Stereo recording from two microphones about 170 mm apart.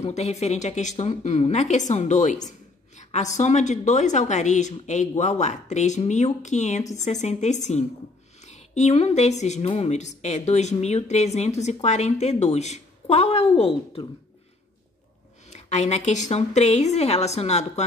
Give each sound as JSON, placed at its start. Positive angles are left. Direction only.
{"t": 0.0, "sound": "a woman's voice", "side_deg": 40}
{"t": 15.5, "sound": "speech", "side_deg": 40}